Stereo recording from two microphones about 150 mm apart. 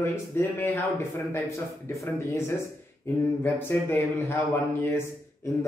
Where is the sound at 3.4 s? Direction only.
15° left (ahead or behind).